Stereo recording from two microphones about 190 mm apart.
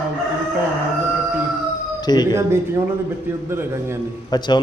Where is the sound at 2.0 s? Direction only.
20° left (ahead or behind).